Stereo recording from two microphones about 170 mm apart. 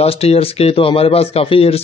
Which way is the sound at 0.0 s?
35° left (ahead or behind).